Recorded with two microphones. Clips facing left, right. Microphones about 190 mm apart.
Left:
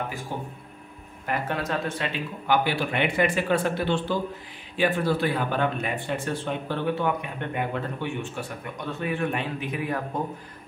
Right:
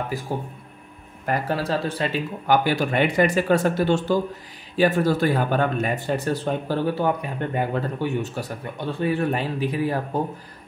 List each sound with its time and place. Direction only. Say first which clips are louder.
0.3 s speech: right 5 dB; 40° right (ahead or behind)